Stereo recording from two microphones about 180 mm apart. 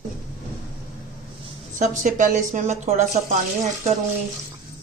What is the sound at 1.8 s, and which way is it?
Speech, 45° right (ahead or behind).